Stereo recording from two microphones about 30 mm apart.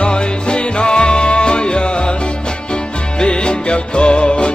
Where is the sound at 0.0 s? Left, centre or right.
Left.